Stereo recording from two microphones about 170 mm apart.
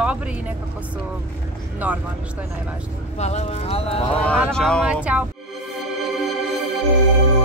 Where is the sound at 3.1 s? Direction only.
40° left (ahead or behind).